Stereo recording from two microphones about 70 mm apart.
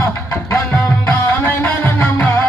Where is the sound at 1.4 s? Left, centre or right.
Left.